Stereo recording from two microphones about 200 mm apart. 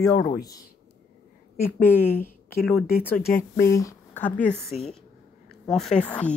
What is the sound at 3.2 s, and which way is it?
Speech, 50° left (ahead or behind).